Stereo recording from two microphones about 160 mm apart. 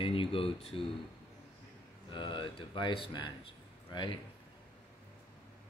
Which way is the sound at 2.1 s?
30° left (ahead or behind).